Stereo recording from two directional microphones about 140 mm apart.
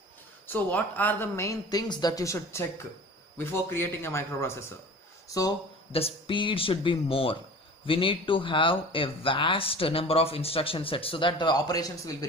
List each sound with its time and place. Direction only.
0.5 s speech: 15° left (ahead or behind)
5.9 s speech: 45° left (ahead or behind); by 12.3 s 25° left (ahead or behind)